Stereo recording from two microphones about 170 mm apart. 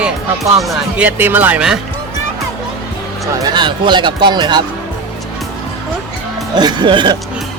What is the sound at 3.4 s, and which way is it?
Speech, 25° right (ahead or behind).